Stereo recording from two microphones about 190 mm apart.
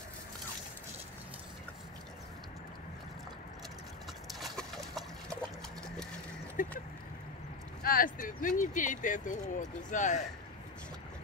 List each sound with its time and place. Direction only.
4.3 s pig: centre (ahead or behind)
6.6 s a sound: 45° left (ahead or behind)
7.8 s speech: 45° left (ahead or behind)